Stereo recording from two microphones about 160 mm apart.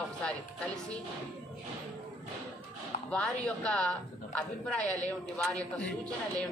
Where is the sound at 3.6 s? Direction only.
5° left (ahead or behind).